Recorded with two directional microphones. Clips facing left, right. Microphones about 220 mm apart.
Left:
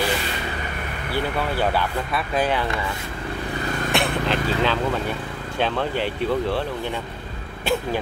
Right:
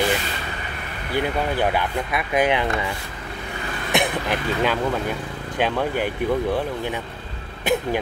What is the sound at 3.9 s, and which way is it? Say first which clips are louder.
Speech: right 1 dB; 15° right (ahead or behind).